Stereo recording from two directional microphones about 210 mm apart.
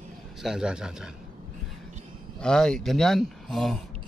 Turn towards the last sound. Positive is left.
turn(degrees=0)  # may be behind; listen again after turning